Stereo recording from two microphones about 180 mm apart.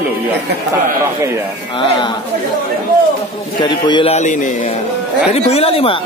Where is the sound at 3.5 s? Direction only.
25° left (ahead or behind).